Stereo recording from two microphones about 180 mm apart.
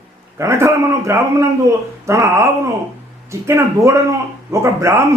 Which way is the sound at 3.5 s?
15° right (ahead or behind).